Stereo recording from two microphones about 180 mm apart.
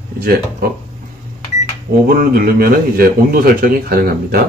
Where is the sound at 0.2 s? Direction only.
55° right (ahead or behind).